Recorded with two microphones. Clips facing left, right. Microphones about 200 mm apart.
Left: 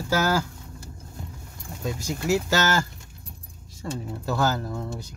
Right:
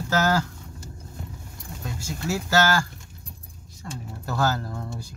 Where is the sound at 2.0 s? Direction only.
20° left (ahead or behind).